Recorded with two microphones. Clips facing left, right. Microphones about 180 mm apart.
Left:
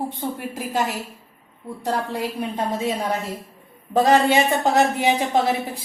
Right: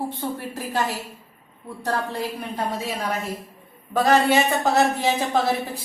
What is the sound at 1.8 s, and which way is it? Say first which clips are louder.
A woman's voice: left 1 dB; 15° left (ahead or behind).